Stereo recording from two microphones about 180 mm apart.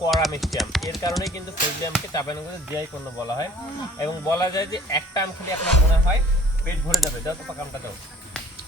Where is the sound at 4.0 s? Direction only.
20° left (ahead or behind).